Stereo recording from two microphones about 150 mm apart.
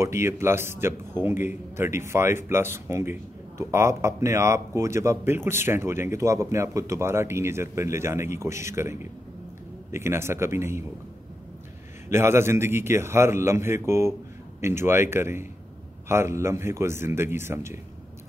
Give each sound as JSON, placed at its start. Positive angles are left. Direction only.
{"t": 0.0, "sound": "a man's voice", "side_deg": -20}
{"t": 12.1, "sound": "a man's voice", "side_deg": -15}